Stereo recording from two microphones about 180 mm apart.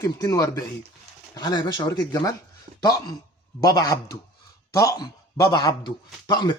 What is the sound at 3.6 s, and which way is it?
Speech, 20° left (ahead or behind).